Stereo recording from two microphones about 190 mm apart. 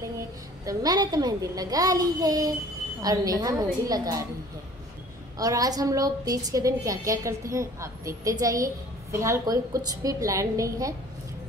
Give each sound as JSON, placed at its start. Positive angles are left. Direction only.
{"t": 0.7, "sound": "a child's voice", "side_deg": -20}
{"t": 5.4, "sound": "a woman's voice", "side_deg": -20}